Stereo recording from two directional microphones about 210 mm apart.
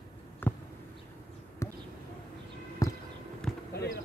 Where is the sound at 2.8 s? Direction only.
15° left (ahead or behind).